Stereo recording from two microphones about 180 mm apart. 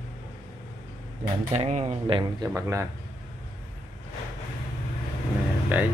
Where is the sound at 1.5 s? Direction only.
40° right (ahead or behind).